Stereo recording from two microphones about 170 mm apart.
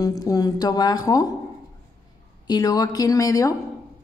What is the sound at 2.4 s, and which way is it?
A woman's voice, 20° left (ahead or behind).